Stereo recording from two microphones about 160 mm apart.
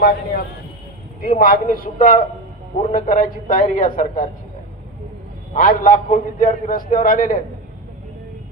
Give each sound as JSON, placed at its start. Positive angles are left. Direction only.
{"t": 0.0, "sound": "a man's voice", "side_deg": 80}
{"t": 1.4, "sound": "a man's voice", "side_deg": 65}
{"t": 5.5, "sound": "a man's voice", "side_deg": 60}